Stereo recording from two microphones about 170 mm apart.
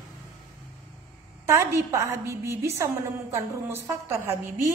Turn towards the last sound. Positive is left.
turn(degrees=-15)  # may be behind; listen again after turning